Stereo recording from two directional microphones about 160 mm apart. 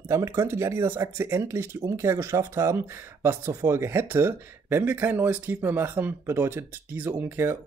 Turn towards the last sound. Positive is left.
turn(degrees=-15)  # may be behind; listen again after turning